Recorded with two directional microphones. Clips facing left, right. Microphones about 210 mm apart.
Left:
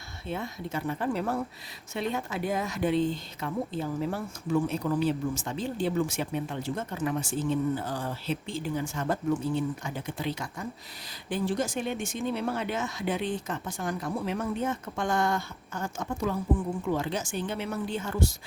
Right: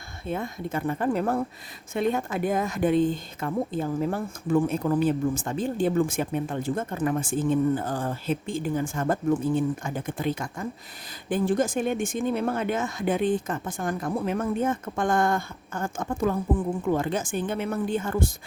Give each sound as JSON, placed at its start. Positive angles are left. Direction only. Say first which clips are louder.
{"t": 0.3, "sound": "a woman's voice", "louder": "right 4 dB", "side_deg": -50}